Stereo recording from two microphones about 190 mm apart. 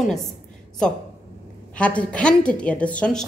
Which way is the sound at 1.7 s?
5° left (ahead or behind).